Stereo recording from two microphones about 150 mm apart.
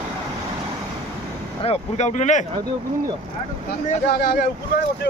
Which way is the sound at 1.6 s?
45° left (ahead or behind).